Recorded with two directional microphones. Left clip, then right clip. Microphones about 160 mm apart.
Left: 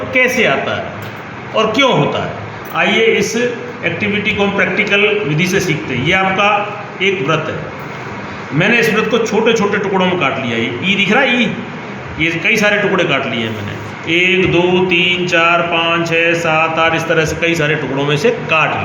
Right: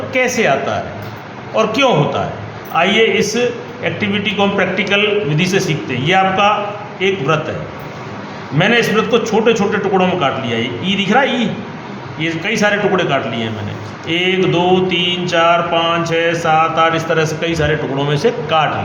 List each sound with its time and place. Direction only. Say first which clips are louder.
0.1 s a man's voice: left 2 dB; 30° right (ahead or behind)
2.7 s mantra: even; 35° right (ahead or behind)
8.5 s mantra: left 1 dB; 35° right (ahead or behind)